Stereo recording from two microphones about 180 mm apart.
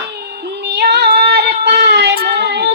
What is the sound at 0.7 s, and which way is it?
Female singing, 65° right (ahead or behind).